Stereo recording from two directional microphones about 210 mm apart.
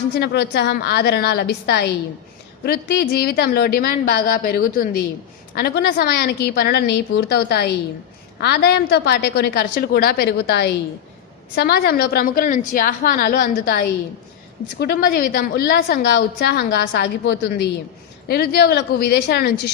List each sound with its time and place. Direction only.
0.1 s a woman's voice: 50° left (ahead or behind)